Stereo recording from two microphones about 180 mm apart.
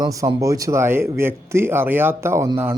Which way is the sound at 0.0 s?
20° right (ahead or behind).